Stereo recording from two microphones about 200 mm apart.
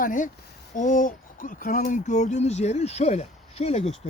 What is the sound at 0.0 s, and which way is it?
Speech, 40° left (ahead or behind).